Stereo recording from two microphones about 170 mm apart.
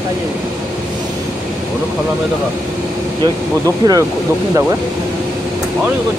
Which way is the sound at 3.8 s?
25° right (ahead or behind).